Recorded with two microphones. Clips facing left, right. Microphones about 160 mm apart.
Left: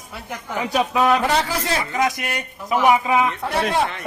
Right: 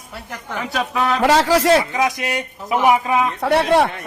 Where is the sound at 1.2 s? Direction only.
90° right.